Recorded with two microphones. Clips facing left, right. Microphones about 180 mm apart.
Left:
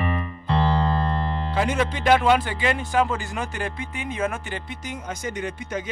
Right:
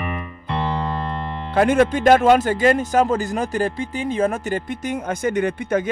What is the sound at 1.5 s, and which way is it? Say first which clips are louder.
Speech: right 9 dB; 55° right (ahead or behind).